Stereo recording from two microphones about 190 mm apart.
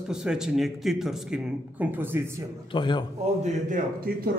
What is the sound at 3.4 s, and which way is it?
Speech, 45° right (ahead or behind).